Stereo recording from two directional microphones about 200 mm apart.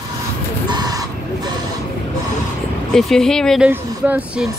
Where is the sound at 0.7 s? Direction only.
20° right (ahead or behind).